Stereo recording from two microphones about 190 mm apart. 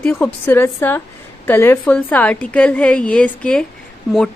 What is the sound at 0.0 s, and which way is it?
A woman's voice, 10° left (ahead or behind).